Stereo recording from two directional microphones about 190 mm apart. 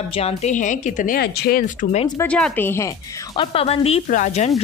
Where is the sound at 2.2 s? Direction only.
10° left (ahead or behind).